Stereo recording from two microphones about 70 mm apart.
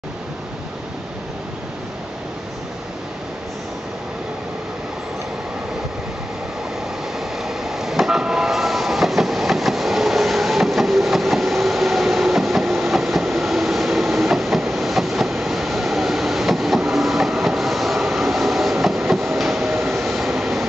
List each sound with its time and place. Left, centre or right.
7.2 s train: centre
19.9 s vehicle: centre